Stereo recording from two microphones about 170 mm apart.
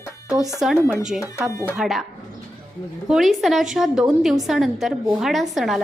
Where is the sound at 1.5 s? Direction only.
20° left (ahead or behind).